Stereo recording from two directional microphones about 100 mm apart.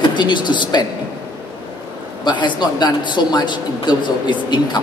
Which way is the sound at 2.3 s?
50° left (ahead or behind).